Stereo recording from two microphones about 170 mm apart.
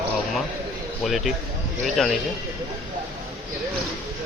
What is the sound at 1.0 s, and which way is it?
Speech, centre (ahead or behind).